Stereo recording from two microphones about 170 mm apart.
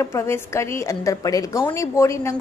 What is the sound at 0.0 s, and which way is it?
A woman's voice, 15° left (ahead or behind).